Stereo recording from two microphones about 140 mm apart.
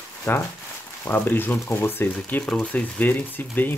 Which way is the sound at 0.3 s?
15° left (ahead or behind).